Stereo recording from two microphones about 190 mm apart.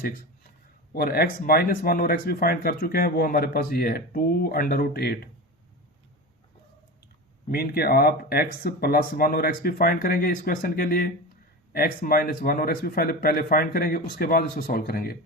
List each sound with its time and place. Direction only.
0.9 s speech: 50° left (ahead or behind)
7.5 s speech: 55° left (ahead or behind)